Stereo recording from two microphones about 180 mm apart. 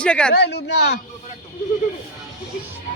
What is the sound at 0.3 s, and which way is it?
Speech, 70° left (ahead or behind).